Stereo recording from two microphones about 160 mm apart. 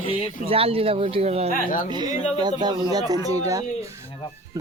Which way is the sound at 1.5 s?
60° left (ahead or behind).